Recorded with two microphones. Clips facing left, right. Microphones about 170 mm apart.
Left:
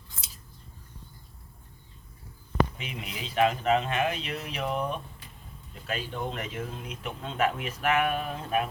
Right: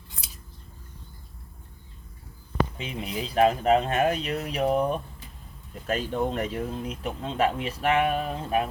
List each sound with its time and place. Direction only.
2.7 s speech: 35° right (ahead or behind)